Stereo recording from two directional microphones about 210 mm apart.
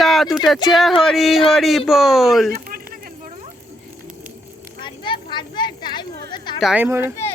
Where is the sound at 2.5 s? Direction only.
45° right (ahead or behind).